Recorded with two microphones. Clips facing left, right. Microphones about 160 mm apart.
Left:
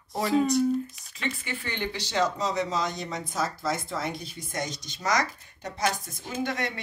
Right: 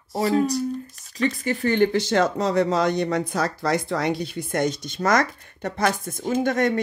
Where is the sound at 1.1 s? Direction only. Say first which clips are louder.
Right 10 dB; 40° right (ahead or behind).